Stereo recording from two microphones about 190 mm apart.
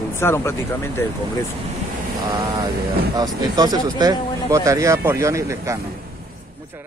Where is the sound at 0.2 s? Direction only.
15° left (ahead or behind).